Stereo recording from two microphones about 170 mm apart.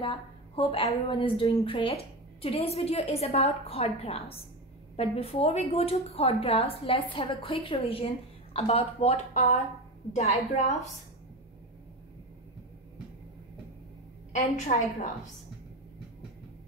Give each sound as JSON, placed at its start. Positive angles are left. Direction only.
{"t": 0.0, "sound": "a woman's voice", "side_deg": 35}
{"t": 14.3, "sound": "a woman's voice", "side_deg": 45}